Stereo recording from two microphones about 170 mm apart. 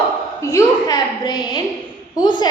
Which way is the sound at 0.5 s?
25° left (ahead or behind).